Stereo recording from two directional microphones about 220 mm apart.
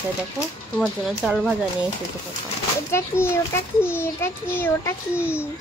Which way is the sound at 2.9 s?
10° left (ahead or behind).